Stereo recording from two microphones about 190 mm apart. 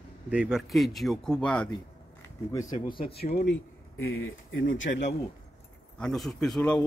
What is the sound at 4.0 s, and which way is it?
Speech, 90° left.